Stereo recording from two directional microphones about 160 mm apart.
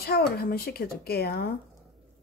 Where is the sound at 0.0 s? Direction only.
75° left (ahead or behind).